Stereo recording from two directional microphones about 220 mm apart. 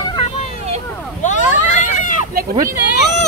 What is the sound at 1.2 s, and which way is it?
Vehicle, 35° left (ahead or behind).